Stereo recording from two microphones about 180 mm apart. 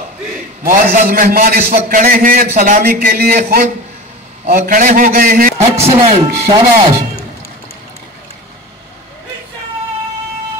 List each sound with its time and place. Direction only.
0.7 s a man's voice: 50° right (ahead or behind)
5.8 s speech: 35° right (ahead or behind)